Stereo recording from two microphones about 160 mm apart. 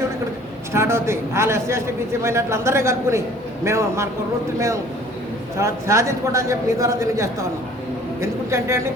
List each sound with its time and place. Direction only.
0.7 s a man's voice: 15° right (ahead or behind)
5.5 s a man's voice: 20° right (ahead or behind)